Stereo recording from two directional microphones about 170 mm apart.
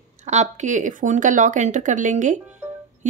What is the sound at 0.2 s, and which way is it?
A woman's voice, 45° right (ahead or behind).